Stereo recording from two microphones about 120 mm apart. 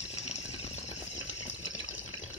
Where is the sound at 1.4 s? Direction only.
90° left.